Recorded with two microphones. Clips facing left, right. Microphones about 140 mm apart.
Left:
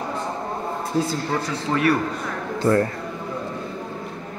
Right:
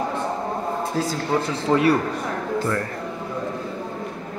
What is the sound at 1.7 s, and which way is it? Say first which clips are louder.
Speech: right 2 dB; 25° right (ahead or behind).